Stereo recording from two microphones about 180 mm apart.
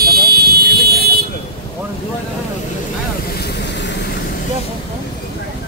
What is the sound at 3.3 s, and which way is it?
Vehicle, 70° left (ahead or behind).